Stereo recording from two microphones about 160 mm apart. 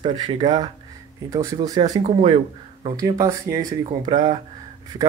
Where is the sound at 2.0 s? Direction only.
40° right (ahead or behind).